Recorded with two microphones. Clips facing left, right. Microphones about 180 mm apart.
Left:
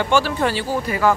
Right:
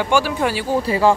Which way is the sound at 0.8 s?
30° right (ahead or behind).